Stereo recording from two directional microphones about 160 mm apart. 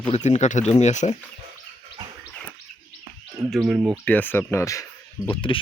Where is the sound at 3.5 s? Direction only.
5° right (ahead or behind).